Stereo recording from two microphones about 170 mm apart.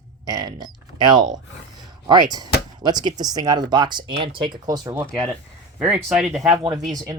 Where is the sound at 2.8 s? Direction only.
25° right (ahead or behind).